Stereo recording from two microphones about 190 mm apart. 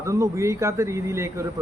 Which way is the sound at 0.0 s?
15° right (ahead or behind).